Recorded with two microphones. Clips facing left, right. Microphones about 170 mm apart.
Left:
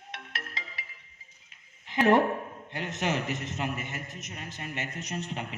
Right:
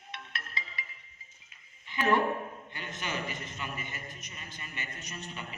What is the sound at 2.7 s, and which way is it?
A man's voice, 90° left.